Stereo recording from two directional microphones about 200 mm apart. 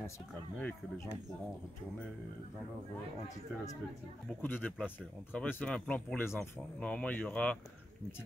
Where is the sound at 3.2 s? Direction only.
15° left (ahead or behind).